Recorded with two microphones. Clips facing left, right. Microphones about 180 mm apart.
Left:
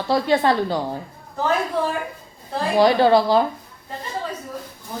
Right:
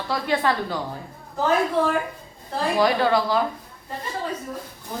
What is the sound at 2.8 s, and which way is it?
Speech, 30° left (ahead or behind).